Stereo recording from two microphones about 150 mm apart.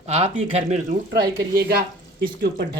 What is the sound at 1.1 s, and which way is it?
Speech, 90° right.